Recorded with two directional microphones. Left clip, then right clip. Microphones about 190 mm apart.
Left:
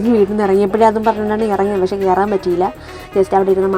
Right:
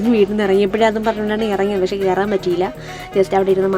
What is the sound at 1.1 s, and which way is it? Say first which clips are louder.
Speech: left 3 dB; 30° right (ahead or behind).